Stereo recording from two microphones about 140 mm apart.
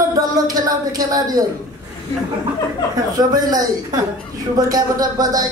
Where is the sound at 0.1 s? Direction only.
25° right (ahead or behind).